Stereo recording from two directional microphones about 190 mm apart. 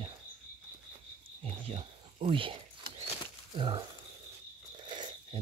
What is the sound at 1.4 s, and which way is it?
Wild animals, 30° right (ahead or behind).